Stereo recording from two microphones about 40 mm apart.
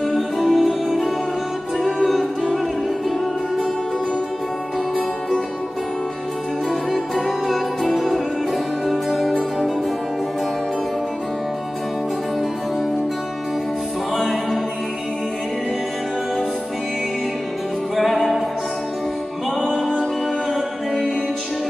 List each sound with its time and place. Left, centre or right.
0.1 s music: centre
6.7 s music: centre
14.1 s music: centre